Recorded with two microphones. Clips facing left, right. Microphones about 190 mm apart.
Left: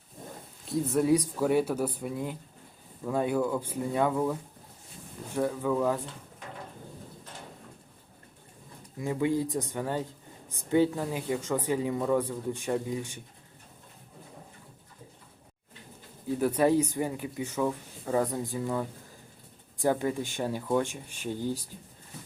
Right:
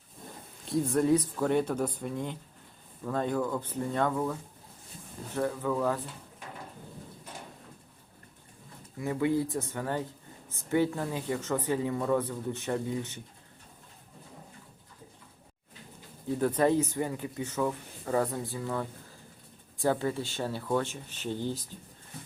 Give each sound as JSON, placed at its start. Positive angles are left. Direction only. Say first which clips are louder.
{"t": 0.7, "sound": "speech", "louder": "even", "side_deg": 10}
{"t": 9.0, "sound": "speech", "louder": "even", "side_deg": 20}
{"t": 16.4, "sound": "speech", "louder": "left 1 dB", "side_deg": 10}